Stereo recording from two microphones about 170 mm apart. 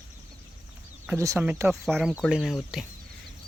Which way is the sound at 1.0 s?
15° right (ahead or behind).